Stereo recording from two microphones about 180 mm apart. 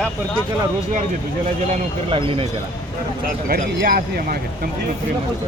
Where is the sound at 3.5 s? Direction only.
60° right (ahead or behind).